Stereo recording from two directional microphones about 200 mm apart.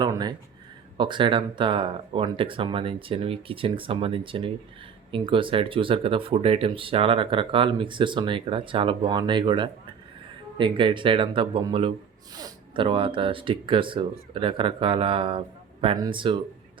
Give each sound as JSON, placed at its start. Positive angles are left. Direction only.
{"t": 0.0, "sound": "speech", "side_deg": -20}